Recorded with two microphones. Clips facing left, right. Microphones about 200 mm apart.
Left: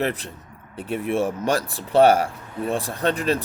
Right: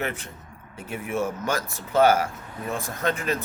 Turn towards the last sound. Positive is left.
turn(degrees=35)  # may be behind; listen again after turning